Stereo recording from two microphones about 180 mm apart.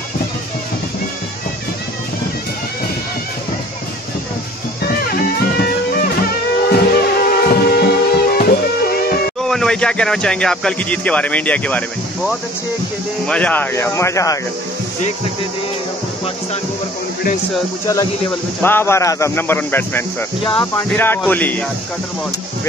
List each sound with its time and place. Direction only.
5.6 s music: 60° left (ahead or behind)
9.4 s speech: 5° left (ahead or behind)
13.3 s speech: 10° left (ahead or behind)
18.6 s speech: 10° left (ahead or behind)